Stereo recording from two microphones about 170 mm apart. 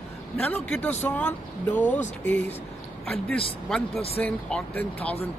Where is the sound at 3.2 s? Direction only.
5° left (ahead or behind).